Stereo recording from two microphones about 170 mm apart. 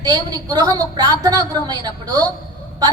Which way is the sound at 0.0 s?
25° right (ahead or behind).